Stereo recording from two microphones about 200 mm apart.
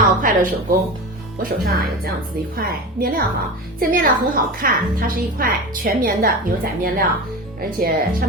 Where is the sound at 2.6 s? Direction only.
45° right (ahead or behind).